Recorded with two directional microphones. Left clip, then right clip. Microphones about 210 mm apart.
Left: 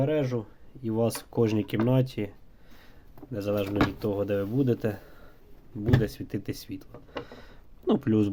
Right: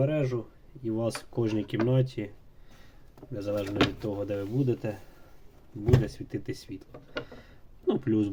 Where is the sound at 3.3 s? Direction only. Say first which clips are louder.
Left 2 dB; 50° left (ahead or behind).